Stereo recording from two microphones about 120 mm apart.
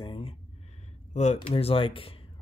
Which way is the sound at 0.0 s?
50° left (ahead or behind).